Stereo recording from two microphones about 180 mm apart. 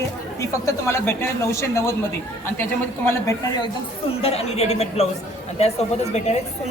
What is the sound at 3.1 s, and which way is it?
Speech, 20° left (ahead or behind).